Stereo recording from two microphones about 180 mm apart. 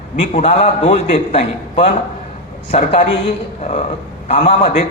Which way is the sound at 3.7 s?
40° left (ahead or behind).